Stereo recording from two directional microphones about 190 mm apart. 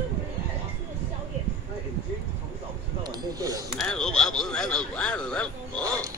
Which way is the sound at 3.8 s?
5° left (ahead or behind).